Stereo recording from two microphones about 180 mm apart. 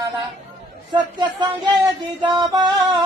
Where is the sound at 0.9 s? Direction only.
25° right (ahead or behind).